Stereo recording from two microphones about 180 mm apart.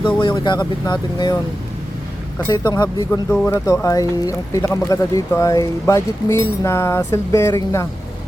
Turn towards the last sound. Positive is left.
turn(degrees=15)  # may be behind; listen again after turning